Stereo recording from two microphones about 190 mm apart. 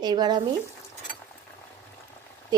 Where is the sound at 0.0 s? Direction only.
20° right (ahead or behind).